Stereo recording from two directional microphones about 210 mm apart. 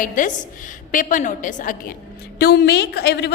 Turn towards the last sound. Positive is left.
turn(degrees=50)  # may be behind; listen again after turning